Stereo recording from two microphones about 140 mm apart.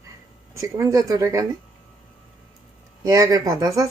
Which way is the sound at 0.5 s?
20° right (ahead or behind).